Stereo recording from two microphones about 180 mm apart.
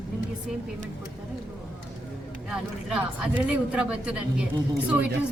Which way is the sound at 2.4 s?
5° right (ahead or behind).